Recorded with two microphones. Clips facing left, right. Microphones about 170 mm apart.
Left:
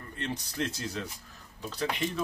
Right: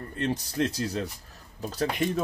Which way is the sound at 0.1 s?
35° right (ahead or behind).